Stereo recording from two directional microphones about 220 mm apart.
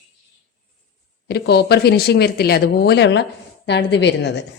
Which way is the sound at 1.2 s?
50° left (ahead or behind).